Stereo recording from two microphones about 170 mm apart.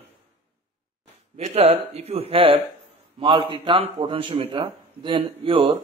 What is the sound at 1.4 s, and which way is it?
Speech, 40° right (ahead or behind).